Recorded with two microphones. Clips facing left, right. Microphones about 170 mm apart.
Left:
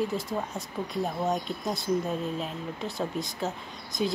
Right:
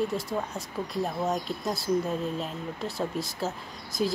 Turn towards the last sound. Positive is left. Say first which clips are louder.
# right 1 dB
turn(degrees=0)  # may be behind; listen again after turning